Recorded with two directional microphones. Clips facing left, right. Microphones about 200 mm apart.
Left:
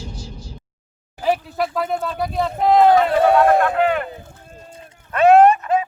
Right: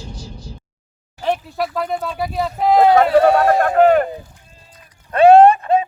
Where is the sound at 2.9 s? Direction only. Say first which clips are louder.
Right 2 dB; 50° right (ahead or behind).